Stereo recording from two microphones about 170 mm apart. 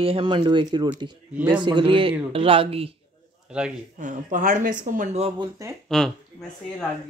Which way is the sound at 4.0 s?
50° right (ahead or behind).